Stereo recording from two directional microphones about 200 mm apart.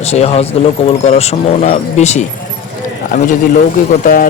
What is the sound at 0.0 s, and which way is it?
Speech, 30° left (ahead or behind).